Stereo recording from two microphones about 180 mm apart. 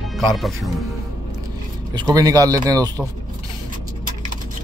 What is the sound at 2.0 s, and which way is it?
Speech, 20° right (ahead or behind).